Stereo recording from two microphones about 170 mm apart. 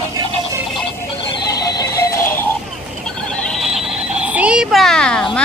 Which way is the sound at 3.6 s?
Centre (ahead or behind).